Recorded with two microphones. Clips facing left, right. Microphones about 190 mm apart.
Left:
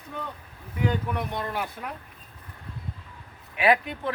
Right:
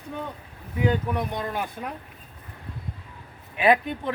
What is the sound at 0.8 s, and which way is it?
Speech, 15° right (ahead or behind).